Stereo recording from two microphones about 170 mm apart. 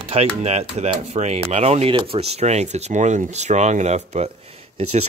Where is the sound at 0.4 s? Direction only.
40° right (ahead or behind).